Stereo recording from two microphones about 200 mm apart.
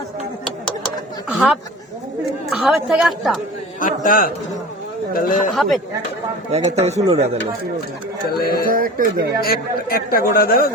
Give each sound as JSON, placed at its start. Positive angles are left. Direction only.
{"t": 1.3, "sound": "chatter", "side_deg": 0}
{"t": 2.5, "sound": "a woman's voice", "side_deg": 0}
{"t": 3.8, "sound": "a man's voice", "side_deg": 40}
{"t": 5.5, "sound": "a woman's voice", "side_deg": 0}
{"t": 6.5, "sound": "speech", "side_deg": -35}
{"t": 8.4, "sound": "speech", "side_deg": 50}
{"t": 8.7, "sound": "speech", "side_deg": -45}
{"t": 9.4, "sound": "speech", "side_deg": 50}